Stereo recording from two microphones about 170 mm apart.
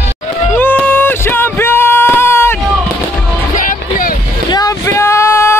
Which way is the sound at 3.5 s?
50° left (ahead or behind).